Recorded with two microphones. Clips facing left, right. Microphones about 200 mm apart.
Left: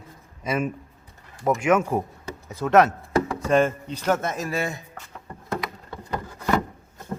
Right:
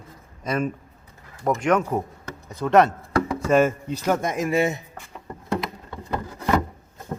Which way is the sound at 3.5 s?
5° right (ahead or behind).